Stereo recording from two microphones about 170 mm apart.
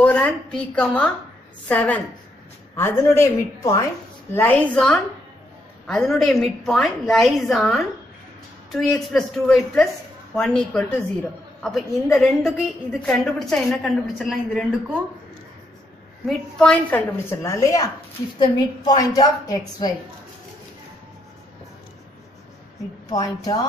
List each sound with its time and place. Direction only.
0.0 s a woman's voice: 5° left (ahead or behind)
16.3 s a woman's voice: 5° left (ahead or behind)
17.4 s a woman's voice: 20° left (ahead or behind)
23.0 s a woman's voice: 20° left (ahead or behind)